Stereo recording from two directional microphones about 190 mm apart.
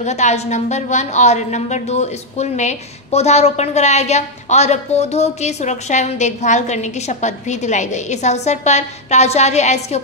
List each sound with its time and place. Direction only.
0.0 s a woman's voice: 35° left (ahead or behind)